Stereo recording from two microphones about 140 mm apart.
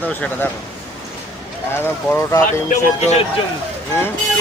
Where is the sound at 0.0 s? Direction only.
10° left (ahead or behind).